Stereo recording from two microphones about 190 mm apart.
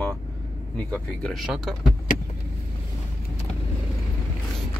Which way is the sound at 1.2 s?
Centre (ahead or behind).